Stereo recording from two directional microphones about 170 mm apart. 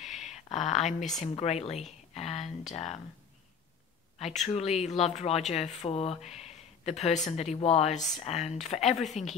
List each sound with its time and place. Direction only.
0.0 s a sound: 40° left (ahead or behind)
1.3 s speech: 35° left (ahead or behind)
4.5 s speech: 40° left (ahead or behind)